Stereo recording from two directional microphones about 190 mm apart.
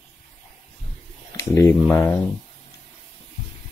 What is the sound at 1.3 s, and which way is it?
Speech, 10° left (ahead or behind).